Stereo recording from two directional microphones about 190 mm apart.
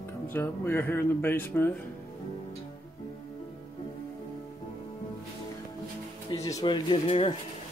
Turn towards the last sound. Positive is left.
turn(degrees=30)  # may be behind; listen again after turning